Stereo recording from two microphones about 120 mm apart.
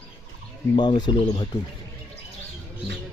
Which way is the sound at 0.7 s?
40° left (ahead or behind).